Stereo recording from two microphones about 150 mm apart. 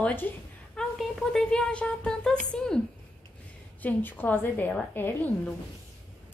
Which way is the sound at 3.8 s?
10° left (ahead or behind).